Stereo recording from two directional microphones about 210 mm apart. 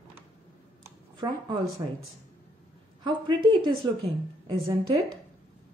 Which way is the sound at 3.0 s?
20° right (ahead or behind).